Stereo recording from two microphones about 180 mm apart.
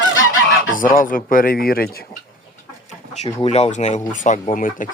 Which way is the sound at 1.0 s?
50° left (ahead or behind).